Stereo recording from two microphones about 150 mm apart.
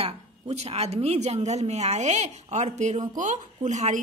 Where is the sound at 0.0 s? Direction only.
45° right (ahead or behind).